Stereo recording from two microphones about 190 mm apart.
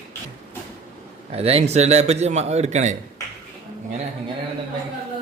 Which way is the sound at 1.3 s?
35° right (ahead or behind).